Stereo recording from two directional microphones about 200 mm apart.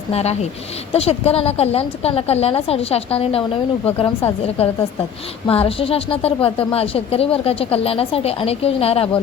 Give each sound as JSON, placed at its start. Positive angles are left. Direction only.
{"t": 0.1, "sound": "a woman's voice", "side_deg": 30}